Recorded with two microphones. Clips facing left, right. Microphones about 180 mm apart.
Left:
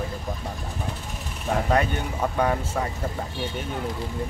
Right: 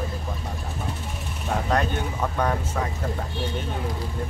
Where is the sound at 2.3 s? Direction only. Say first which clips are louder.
Left 2 dB; 10° left (ahead or behind).